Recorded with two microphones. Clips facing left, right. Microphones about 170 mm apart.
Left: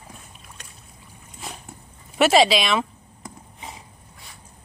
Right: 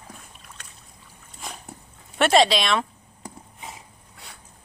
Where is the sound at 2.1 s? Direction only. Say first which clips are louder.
Left 2 dB; 5° left (ahead or behind).